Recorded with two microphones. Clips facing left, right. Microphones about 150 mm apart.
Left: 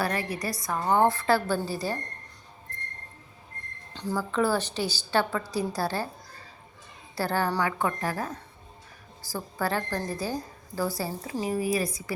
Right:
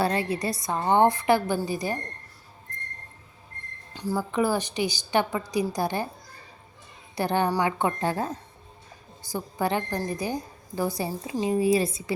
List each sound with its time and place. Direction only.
0.0 s a woman's voice: 25° right (ahead or behind)
3.9 s a woman's voice: 10° right (ahead or behind)
7.2 s a woman's voice: 20° right (ahead or behind)